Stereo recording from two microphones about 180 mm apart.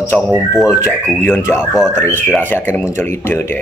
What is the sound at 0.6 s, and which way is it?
A man's voice, 20° left (ahead or behind).